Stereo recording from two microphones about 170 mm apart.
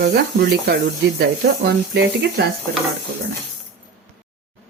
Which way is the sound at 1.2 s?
85° right.